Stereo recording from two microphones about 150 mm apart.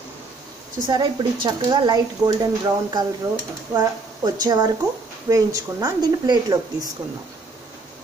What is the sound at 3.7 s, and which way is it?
Speech, 25° right (ahead or behind).